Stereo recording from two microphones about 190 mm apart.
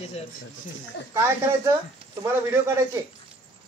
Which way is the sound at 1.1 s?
15° right (ahead or behind).